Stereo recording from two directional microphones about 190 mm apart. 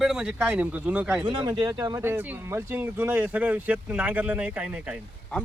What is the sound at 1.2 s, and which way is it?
Speech, 25° right (ahead or behind).